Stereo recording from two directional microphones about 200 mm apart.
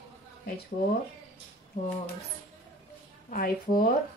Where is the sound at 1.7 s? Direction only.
40° left (ahead or behind).